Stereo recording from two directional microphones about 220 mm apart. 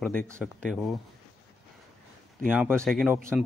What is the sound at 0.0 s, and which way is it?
Speech, 5° left (ahead or behind).